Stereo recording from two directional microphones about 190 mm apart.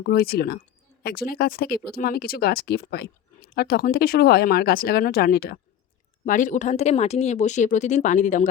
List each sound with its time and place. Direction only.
0.0 s speech: 55° left (ahead or behind)
6.2 s a woman's voice: 45° left (ahead or behind)